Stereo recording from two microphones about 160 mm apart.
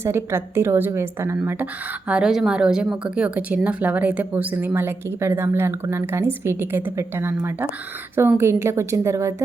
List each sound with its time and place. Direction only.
0.0 s a woman's voice: 15° right (ahead or behind)